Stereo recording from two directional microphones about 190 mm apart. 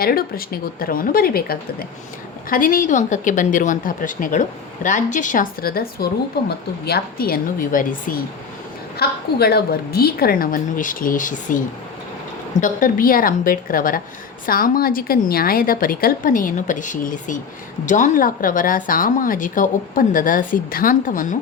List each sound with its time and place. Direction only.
0.0 s a woman's voice: 50° left (ahead or behind)